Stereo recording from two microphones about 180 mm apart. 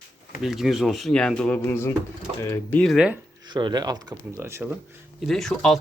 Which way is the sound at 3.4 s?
25° right (ahead or behind).